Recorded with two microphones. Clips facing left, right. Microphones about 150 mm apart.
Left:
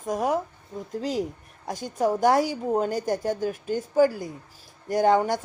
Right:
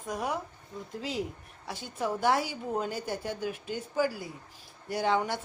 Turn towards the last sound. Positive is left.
turn(degrees=45)  # may be behind; listen again after turning